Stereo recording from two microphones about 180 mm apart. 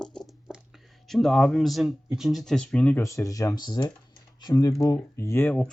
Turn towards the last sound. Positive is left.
turn(degrees=10)  # may be behind; listen again after turning